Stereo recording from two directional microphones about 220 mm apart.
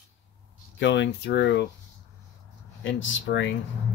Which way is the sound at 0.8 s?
50° left (ahead or behind).